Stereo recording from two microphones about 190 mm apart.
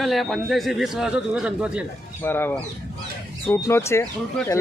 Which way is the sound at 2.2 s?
10° left (ahead or behind).